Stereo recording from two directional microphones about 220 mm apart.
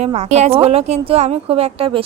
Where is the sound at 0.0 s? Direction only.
30° right (ahead or behind).